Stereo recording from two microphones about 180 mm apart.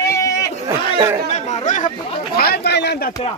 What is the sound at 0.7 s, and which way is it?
Speech, 15° right (ahead or behind).